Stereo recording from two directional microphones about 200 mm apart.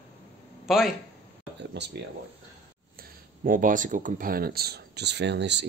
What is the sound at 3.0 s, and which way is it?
Speech, 45° right (ahead or behind).